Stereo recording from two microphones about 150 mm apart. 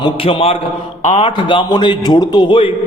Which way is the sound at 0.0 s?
40° left (ahead or behind).